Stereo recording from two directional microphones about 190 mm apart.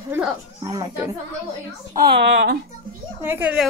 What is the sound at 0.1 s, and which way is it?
Speech, 15° right (ahead or behind).